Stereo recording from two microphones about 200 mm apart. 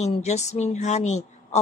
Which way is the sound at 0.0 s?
35° left (ahead or behind).